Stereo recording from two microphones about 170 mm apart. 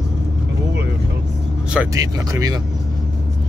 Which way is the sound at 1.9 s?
20° right (ahead or behind).